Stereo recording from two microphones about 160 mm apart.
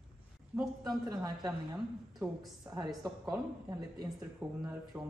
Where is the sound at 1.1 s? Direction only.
20° right (ahead or behind).